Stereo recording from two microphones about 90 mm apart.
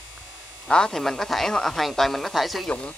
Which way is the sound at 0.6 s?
5° left (ahead or behind).